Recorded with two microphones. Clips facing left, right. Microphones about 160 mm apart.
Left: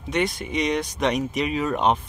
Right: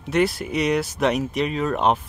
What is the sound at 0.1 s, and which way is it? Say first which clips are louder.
Speech: right 4 dB; 5° right (ahead or behind).